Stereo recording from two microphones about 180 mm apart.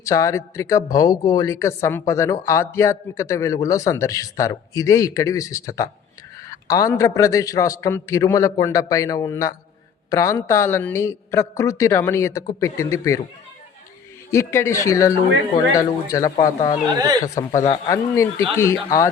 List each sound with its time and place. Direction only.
0.0 s a man's voice: 20° left (ahead or behind)
14.3 s a man's voice: 15° left (ahead or behind)
16.9 s speech: 25° right (ahead or behind)
17.2 s a man's voice: 15° left (ahead or behind)